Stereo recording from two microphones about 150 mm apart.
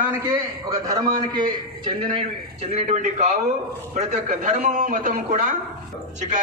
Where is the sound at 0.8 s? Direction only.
25° right (ahead or behind).